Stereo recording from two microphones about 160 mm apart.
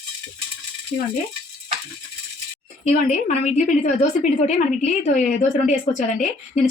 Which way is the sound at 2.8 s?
45° left (ahead or behind).